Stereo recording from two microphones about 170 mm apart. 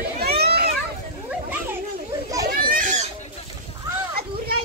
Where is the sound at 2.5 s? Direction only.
60° right (ahead or behind).